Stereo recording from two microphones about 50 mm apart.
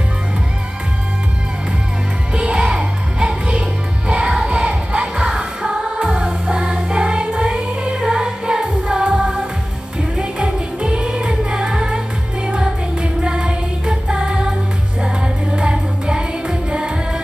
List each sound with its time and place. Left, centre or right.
2.3 s music: right